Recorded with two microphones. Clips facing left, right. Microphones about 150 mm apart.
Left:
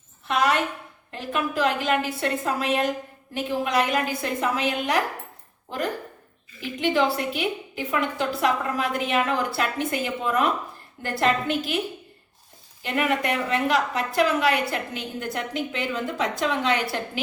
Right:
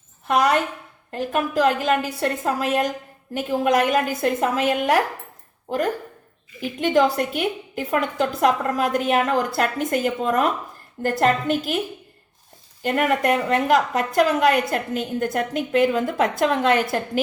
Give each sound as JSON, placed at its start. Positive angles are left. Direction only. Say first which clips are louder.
{"t": 0.3, "sound": "a woman's voice", "louder": "right 4 dB", "side_deg": -45}
{"t": 6.9, "sound": "a woman's voice", "louder": "right 6 dB", "side_deg": -45}
{"t": 12.8, "sound": "a woman's voice", "louder": "right 4 dB", "side_deg": -45}